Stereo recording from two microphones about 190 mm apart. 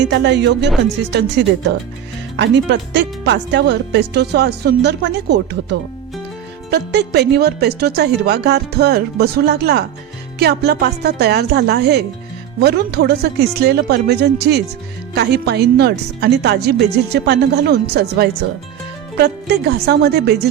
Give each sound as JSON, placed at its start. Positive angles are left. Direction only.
{"t": 0.0, "sound": "speech", "side_deg": -65}